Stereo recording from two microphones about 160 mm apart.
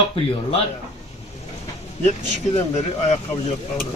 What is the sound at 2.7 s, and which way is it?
Speech, 45° left (ahead or behind).